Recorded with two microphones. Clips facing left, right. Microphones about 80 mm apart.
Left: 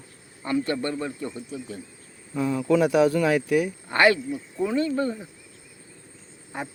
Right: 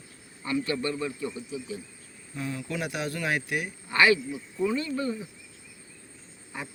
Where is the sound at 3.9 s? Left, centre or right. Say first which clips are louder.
Left 1 dB; left.